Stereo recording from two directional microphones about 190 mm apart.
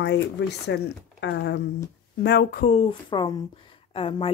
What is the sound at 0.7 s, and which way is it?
Speech, 70° left (ahead or behind).